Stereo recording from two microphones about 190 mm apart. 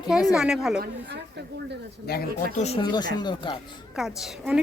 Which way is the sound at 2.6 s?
35° left (ahead or behind).